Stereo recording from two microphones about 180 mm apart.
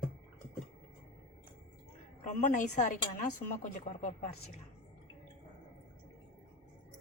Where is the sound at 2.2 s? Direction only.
40° left (ahead or behind).